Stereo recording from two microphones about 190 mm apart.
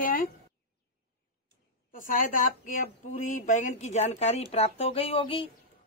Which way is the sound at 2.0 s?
45° left (ahead or behind).